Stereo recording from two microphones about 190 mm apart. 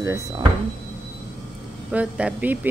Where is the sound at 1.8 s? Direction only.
5° right (ahead or behind).